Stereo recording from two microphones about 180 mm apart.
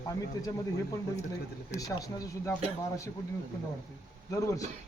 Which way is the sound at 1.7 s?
20° left (ahead or behind).